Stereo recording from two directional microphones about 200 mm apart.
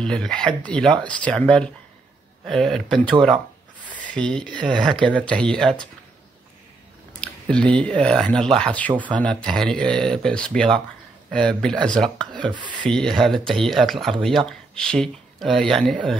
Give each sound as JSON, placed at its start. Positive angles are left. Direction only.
{"t": 0.0, "sound": "speech", "side_deg": 5}
{"t": 4.1, "sound": "speech", "side_deg": 5}
{"t": 7.2, "sound": "speech", "side_deg": 5}